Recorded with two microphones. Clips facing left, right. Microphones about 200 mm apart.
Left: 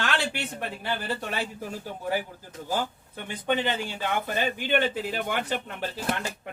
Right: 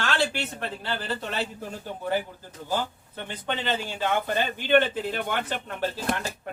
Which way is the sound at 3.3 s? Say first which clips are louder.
Left 3 dB; 10° left (ahead or behind).